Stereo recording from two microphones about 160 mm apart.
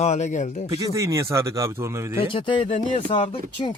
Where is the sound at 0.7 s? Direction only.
20° right (ahead or behind).